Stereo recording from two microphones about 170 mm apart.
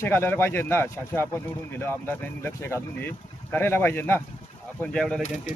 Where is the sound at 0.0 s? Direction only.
15° left (ahead or behind).